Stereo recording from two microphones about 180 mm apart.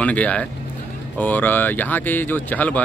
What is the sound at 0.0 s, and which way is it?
A man's voice, 5° left (ahead or behind).